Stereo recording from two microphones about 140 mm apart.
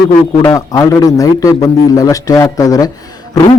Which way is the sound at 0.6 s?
25° left (ahead or behind).